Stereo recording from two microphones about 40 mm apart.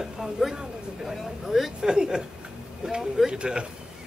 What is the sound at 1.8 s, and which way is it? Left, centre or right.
A child's voice, centre.